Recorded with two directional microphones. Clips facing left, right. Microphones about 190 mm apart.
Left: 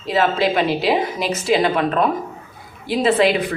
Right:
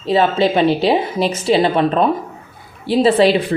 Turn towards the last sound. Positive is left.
turn(degrees=-30)  # may be behind; listen again after turning